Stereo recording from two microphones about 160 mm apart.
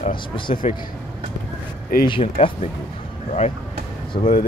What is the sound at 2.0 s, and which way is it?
Speech, 30° left (ahead or behind).